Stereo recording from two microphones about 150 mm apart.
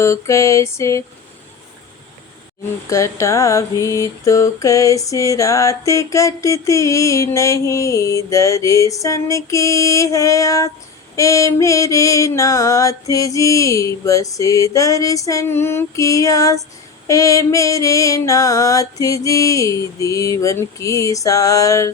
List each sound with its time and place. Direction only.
0.0 s mantra: 20° left (ahead or behind)
2.9 s mantra: 20° left (ahead or behind)